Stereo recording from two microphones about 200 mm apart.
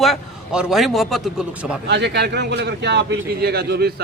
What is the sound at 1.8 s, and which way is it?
Speech, 60° right (ahead or behind).